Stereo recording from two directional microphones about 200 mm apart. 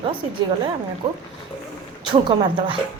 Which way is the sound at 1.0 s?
30° right (ahead or behind).